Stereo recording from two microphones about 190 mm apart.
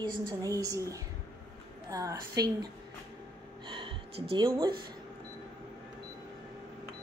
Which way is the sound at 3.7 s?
25° right (ahead or behind).